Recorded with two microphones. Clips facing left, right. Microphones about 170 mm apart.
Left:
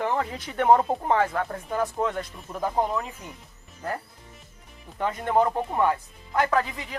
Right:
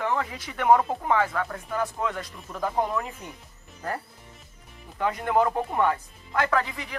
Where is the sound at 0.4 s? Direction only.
30° left (ahead or behind).